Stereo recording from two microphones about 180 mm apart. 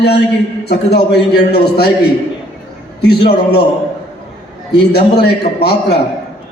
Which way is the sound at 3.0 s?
65° left (ahead or behind).